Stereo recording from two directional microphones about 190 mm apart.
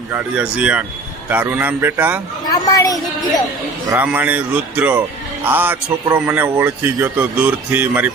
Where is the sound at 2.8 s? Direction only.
20° left (ahead or behind).